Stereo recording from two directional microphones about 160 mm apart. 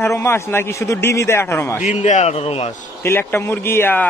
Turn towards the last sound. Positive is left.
turn(degrees=15)  # may be behind; listen again after turning